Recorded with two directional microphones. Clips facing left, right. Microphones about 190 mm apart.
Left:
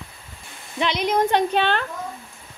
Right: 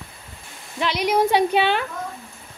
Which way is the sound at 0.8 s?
10° right (ahead or behind).